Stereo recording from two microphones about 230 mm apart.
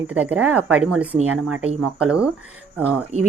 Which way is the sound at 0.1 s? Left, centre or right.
Centre.